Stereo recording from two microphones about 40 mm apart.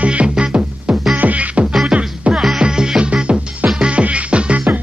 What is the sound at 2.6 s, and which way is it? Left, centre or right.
Music, centre.